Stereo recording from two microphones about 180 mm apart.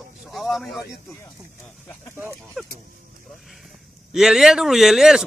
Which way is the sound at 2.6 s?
5° right (ahead or behind).